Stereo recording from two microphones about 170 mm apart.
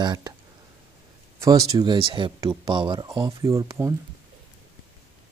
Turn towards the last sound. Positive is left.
turn(degrees=-20)  # may be behind; listen again after turning